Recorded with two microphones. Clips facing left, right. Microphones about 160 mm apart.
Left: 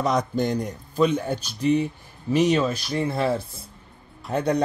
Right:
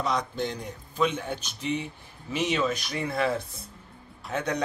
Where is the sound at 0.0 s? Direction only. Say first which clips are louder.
Left 6 dB; 45° left (ahead or behind).